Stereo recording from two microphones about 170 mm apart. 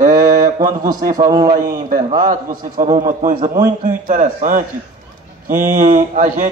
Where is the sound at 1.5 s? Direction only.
55° right (ahead or behind).